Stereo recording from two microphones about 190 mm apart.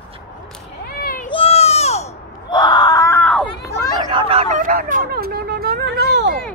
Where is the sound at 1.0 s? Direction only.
45° left (ahead or behind).